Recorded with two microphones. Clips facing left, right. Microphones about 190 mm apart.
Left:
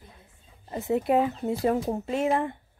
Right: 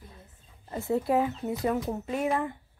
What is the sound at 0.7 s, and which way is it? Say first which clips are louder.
Speech: left 2 dB; 20° left (ahead or behind).